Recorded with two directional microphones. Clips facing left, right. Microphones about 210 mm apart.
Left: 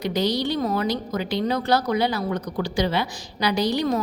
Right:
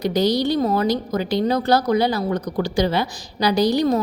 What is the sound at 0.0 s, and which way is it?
A woman's voice, 40° right (ahead or behind).